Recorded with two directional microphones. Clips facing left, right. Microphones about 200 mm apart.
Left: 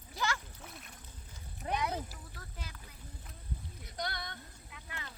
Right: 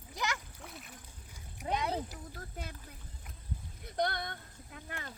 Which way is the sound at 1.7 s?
30° right (ahead or behind).